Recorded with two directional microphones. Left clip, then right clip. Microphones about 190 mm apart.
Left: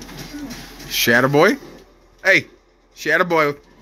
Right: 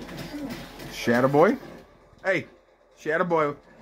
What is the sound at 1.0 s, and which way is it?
Speech, 15° left (ahead or behind).